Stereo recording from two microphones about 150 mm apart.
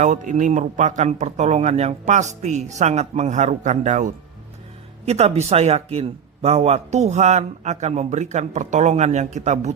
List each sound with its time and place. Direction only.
0.0 s a man's voice: 55° right (ahead or behind)